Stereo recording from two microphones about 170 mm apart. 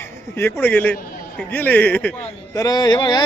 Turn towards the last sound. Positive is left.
turn(degrees=25)  # may be behind; listen again after turning